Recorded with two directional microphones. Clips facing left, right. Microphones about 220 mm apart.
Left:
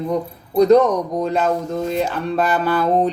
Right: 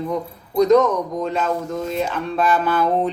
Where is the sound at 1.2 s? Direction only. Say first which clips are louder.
Left 3 dB; 40° left (ahead or behind).